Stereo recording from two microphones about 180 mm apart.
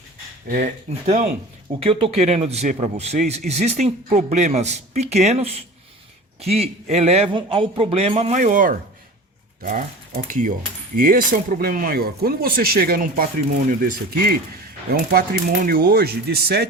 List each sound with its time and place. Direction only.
0.4 s speech: 45° right (ahead or behind)